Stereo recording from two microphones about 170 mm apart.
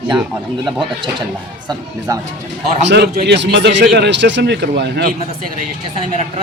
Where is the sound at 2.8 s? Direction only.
70° right (ahead or behind).